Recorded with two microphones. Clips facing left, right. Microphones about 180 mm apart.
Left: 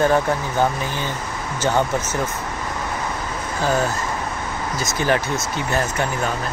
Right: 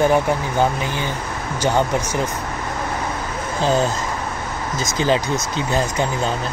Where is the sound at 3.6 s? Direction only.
25° right (ahead or behind).